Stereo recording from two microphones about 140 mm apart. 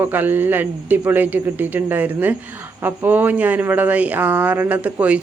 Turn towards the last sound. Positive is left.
turn(degrees=-10)  # may be behind; listen again after turning